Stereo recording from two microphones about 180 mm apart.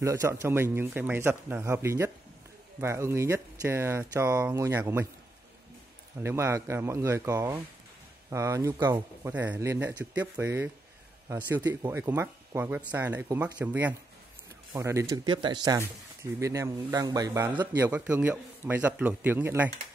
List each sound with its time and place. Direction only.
0.0 s a man's voice: 15° right (ahead or behind)
6.2 s a man's voice: 15° right (ahead or behind)